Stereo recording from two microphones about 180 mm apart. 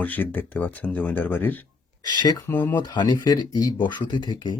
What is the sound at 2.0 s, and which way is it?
Speech, 25° left (ahead or behind).